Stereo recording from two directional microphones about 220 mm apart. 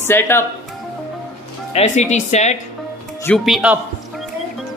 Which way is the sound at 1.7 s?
30° left (ahead or behind).